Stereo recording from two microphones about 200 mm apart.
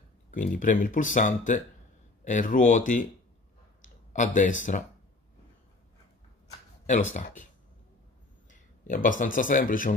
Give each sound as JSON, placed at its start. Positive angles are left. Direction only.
{"t": 0.3, "sound": "speech", "side_deg": 40}
{"t": 6.9, "sound": "speech", "side_deg": 40}
{"t": 8.5, "sound": "speech", "side_deg": 40}